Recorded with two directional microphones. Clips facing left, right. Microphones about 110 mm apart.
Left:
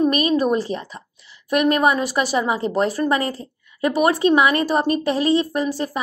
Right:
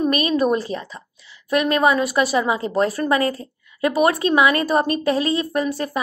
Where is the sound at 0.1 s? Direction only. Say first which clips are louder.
Even; 35° left (ahead or behind).